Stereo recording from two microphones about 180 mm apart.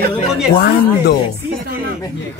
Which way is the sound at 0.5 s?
60° left (ahead or behind).